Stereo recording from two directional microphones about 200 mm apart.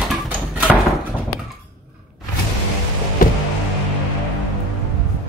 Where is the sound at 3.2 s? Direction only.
45° left (ahead or behind).